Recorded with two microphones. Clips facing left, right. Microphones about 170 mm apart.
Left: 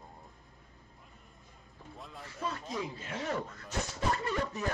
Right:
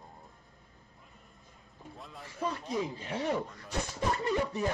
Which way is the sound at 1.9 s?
Centre (ahead or behind).